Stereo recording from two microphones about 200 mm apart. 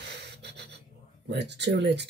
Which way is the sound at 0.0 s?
55° right (ahead or behind).